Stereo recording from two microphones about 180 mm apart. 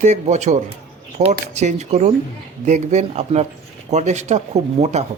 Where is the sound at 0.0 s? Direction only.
40° right (ahead or behind).